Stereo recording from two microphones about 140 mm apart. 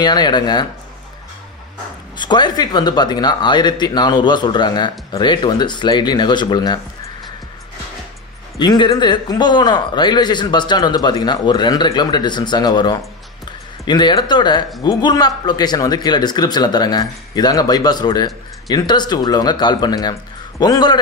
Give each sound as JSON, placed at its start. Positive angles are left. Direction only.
{"t": 0.0, "sound": "speech", "side_deg": 30}
{"t": 2.1, "sound": "speech", "side_deg": 35}
{"t": 8.5, "sound": "a man's voice", "side_deg": 30}